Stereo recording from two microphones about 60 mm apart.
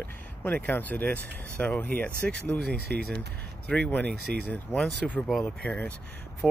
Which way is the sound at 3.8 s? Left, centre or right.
Left.